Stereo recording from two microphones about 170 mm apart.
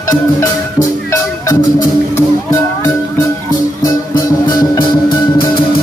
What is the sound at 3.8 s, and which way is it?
Music, 25° left (ahead or behind).